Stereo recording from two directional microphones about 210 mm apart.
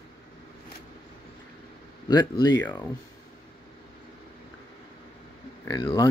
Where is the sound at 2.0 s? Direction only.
20° left (ahead or behind).